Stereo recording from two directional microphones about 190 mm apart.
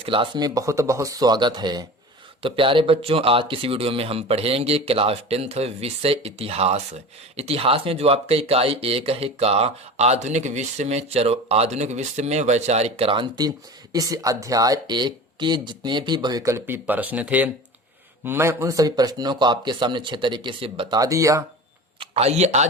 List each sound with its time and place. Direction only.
0.0 s speech: 25° right (ahead or behind)
21.9 s speech: 30° right (ahead or behind)